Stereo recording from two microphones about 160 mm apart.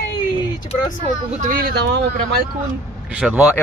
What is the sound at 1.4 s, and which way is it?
Speech, 65° right (ahead or behind).